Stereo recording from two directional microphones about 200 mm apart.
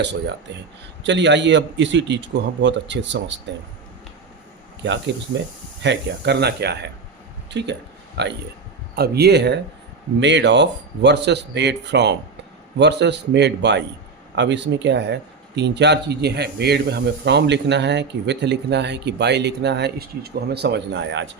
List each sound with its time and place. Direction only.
0.0 s speech: 60° right (ahead or behind)
4.8 s speech: 60° right (ahead or behind)
7.5 s a sound: 60° right (ahead or behind)
9.0 s speech: 55° right (ahead or behind)